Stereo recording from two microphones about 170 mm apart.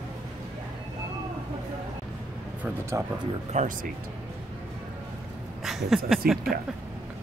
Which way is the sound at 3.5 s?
45° right (ahead or behind).